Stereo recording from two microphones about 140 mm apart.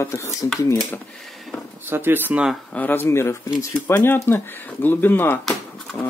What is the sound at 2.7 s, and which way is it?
Speech, 15° left (ahead or behind).